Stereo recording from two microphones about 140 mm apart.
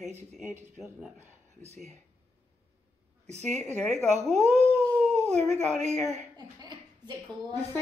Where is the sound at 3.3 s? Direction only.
55° right (ahead or behind).